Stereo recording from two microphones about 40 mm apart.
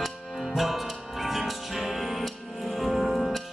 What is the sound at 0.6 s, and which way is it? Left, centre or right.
Music, centre.